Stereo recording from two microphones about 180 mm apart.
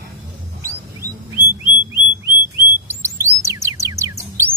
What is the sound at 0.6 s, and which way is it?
Bird, 15° right (ahead or behind).